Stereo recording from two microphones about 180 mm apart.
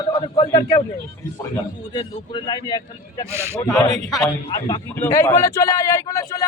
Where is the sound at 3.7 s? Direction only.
20° left (ahead or behind).